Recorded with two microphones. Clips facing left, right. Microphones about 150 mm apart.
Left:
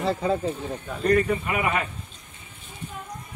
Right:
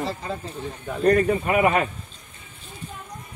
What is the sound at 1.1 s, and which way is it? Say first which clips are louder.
Speech: right 3 dB; 45° right (ahead or behind).